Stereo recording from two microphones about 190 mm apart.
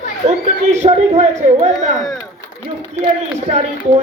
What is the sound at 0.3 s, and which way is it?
Speech, 35° right (ahead or behind).